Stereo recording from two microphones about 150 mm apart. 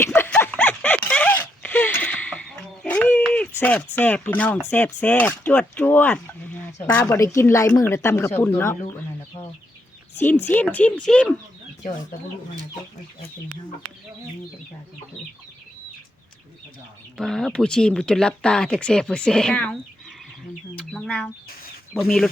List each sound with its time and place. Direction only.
0.0 s a sound: 15° left (ahead or behind)
3.6 s a woman's voice: 10° left (ahead or behind)
10.4 s speech: 10° left (ahead or behind)
17.2 s speech: 5° left (ahead or behind)
20.7 s speech: 5° left (ahead or behind)